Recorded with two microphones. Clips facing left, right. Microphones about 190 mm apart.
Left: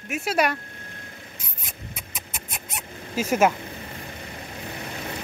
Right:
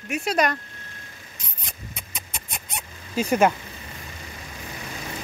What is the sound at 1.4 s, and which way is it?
Rodents, 5° left (ahead or behind).